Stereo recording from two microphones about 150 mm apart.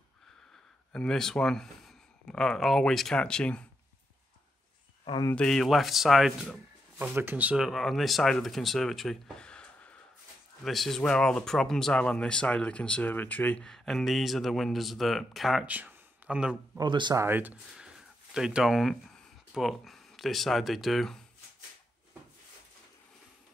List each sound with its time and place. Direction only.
0.9 s speech: 5° left (ahead or behind)
5.0 s speech: 30° left (ahead or behind)
5.3 s speech: 5° left (ahead or behind)
7.0 s speech: 15° right (ahead or behind)
16.7 s speech: 30° right (ahead or behind)
17.2 s speech: 10° right (ahead or behind)